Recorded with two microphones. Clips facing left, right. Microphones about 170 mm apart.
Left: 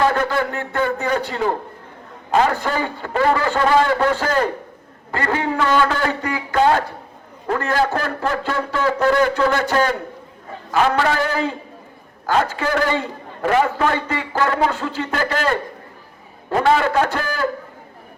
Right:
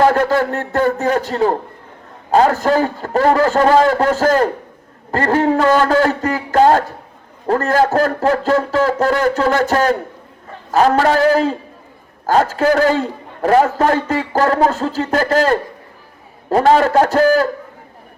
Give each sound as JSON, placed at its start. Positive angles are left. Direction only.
{"t": 0.0, "sound": "a man's voice", "side_deg": -40}